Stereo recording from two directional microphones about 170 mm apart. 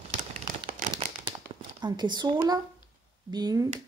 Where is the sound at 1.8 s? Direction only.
25° right (ahead or behind).